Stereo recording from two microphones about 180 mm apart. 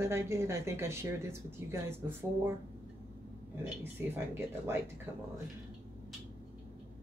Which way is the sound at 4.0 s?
10° right (ahead or behind).